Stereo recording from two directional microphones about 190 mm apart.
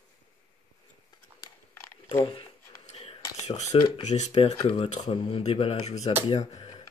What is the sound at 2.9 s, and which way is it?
Whispering, 35° left (ahead or behind).